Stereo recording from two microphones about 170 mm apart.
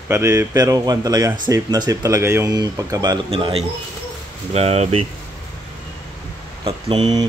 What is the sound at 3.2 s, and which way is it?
Speech, 35° right (ahead or behind).